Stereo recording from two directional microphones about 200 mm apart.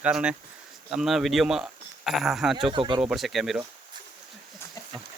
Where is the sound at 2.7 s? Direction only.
25° right (ahead or behind).